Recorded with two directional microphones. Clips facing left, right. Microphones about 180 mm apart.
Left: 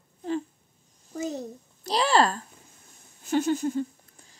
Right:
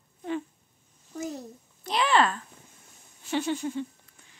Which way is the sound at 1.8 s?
35° left (ahead or behind).